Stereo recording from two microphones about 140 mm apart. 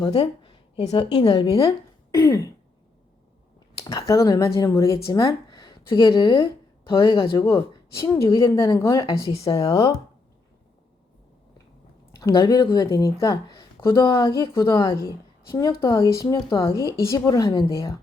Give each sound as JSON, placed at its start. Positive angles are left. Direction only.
{"t": 0.1, "sound": "a sound", "side_deg": 40}
{"t": 0.9, "sound": "a woman's voice", "side_deg": 35}
{"t": 3.8, "sound": "a woman's voice", "side_deg": 25}
{"t": 12.1, "sound": "a woman's voice", "side_deg": 30}